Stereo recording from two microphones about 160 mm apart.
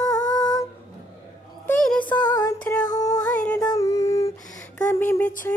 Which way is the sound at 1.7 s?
10° left (ahead or behind).